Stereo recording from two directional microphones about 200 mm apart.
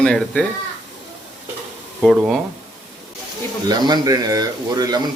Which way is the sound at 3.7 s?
20° right (ahead or behind).